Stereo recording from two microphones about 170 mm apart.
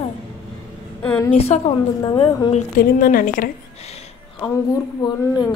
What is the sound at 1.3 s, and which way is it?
Speech, 35° left (ahead or behind).